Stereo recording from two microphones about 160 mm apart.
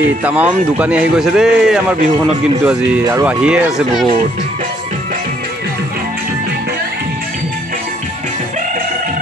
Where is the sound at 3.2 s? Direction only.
5° right (ahead or behind).